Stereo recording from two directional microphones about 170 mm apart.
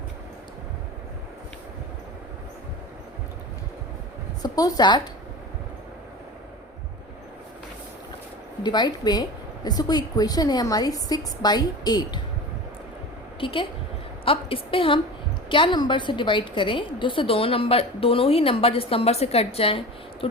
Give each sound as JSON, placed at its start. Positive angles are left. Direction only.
{"t": 4.4, "sound": "a woman's voice", "side_deg": 20}
{"t": 8.6, "sound": "a woman's voice", "side_deg": 25}
{"t": 13.4, "sound": "a woman's voice", "side_deg": 30}